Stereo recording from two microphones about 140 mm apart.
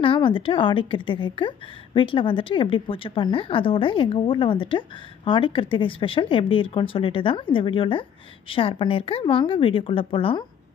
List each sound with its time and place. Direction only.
0.0 s a woman's voice: 35° left (ahead or behind)